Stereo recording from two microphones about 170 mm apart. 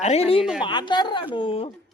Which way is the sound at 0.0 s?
35° left (ahead or behind).